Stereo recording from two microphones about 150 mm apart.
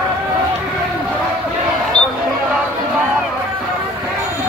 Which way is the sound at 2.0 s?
10° left (ahead or behind).